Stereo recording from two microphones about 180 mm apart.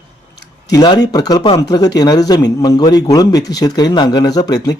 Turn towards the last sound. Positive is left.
turn(degrees=20)  # may be behind; listen again after turning